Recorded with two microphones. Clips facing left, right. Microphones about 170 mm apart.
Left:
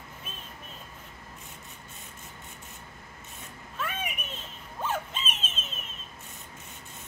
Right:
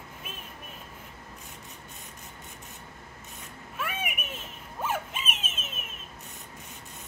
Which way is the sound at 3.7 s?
10° right (ahead or behind).